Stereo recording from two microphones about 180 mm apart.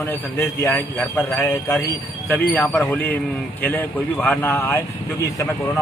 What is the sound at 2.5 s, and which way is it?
Speech, centre (ahead or behind).